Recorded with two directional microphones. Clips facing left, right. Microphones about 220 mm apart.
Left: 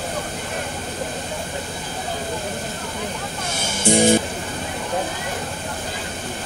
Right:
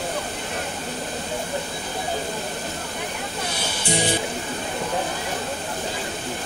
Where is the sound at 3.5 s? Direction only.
45° left (ahead or behind).